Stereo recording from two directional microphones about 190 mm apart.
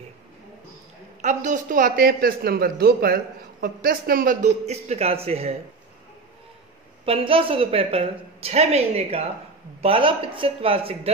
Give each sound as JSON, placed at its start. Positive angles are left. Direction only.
{"t": 1.2, "sound": "speech", "side_deg": -40}
{"t": 4.6, "sound": "a woman's voice", "side_deg": -35}
{"t": 7.1, "sound": "a woman's voice", "side_deg": -30}